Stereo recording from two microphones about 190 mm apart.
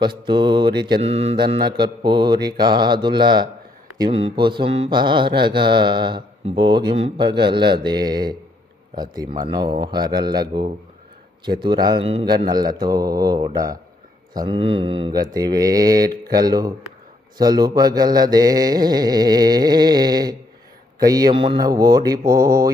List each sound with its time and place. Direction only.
0.0 s mantra: 25° right (ahead or behind)